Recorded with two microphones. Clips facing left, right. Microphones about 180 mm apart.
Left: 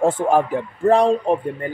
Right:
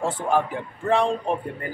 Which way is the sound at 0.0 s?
50° left (ahead or behind).